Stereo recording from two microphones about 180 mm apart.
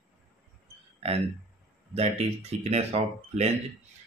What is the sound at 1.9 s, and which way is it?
Speech, 35° right (ahead or behind).